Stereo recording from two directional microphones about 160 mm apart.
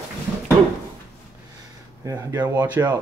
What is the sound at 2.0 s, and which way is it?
Speech, 25° right (ahead or behind).